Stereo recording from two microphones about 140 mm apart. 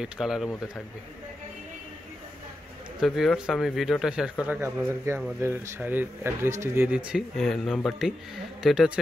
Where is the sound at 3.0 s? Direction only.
Centre (ahead or behind).